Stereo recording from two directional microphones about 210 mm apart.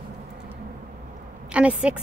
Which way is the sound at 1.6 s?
5° right (ahead or behind).